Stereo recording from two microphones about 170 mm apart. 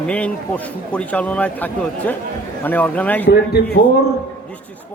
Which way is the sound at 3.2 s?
70° left (ahead or behind).